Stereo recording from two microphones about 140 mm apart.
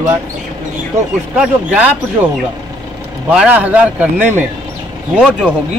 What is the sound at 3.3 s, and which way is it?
Speech, 10° right (ahead or behind).